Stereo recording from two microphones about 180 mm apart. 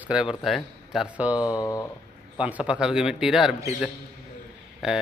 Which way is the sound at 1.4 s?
20° left (ahead or behind).